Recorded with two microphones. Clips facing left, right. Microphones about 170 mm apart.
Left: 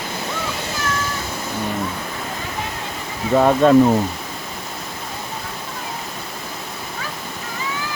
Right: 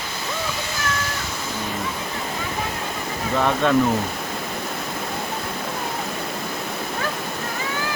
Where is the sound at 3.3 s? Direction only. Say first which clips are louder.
Left 7 dB; 40° left (ahead or behind).